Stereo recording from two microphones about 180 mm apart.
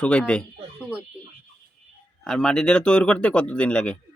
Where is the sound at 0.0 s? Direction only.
5° left (ahead or behind).